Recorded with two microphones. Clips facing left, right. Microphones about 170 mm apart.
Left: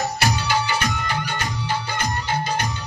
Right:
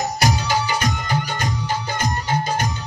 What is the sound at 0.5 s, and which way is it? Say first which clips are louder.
Music: right 1 dB; 40° right (ahead or behind).